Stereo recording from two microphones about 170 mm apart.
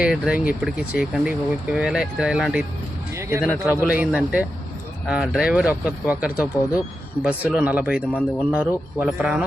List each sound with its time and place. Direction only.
0.0 s speech: 5° right (ahead or behind)
3.2 s a sound: 15° right (ahead or behind)
3.6 s speech: 10° right (ahead or behind)